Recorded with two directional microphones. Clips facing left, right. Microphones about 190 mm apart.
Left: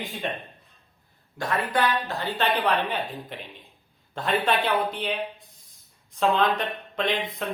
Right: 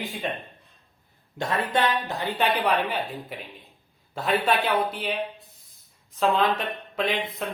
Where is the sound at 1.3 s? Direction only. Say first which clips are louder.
Right 1 dB; 25° right (ahead or behind); by 5.2 s 5° right (ahead or behind).